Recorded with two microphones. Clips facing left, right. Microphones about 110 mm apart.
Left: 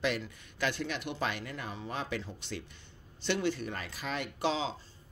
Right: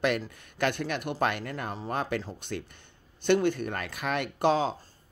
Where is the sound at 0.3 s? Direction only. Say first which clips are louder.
Right 5 dB; 55° right (ahead or behind).